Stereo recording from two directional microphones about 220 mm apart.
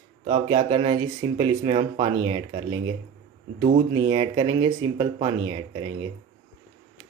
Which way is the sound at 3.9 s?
25° right (ahead or behind).